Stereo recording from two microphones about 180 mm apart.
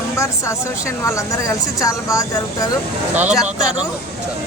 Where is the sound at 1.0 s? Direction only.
15° left (ahead or behind).